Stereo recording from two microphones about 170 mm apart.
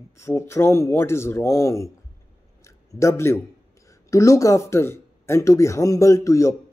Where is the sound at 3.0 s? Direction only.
15° left (ahead or behind).